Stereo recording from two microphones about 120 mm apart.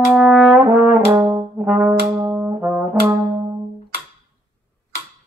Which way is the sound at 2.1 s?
25° right (ahead or behind).